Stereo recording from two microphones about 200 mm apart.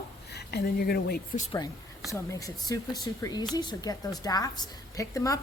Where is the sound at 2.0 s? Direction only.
15° left (ahead or behind).